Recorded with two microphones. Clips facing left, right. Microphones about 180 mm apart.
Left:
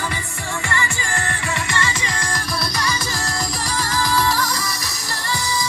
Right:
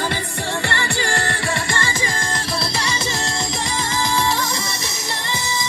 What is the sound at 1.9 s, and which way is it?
Music, 25° right (ahead or behind).